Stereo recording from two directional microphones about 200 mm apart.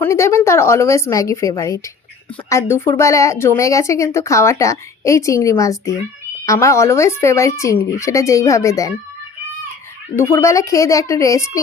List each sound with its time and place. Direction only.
0.0 s speech: 15° left (ahead or behind)
10.2 s speech: 15° left (ahead or behind)